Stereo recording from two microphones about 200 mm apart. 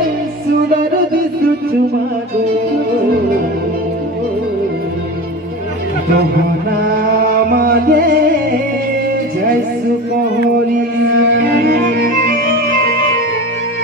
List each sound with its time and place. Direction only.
6.8 s music: 45° right (ahead or behind)
11.3 s music: 50° right (ahead or behind)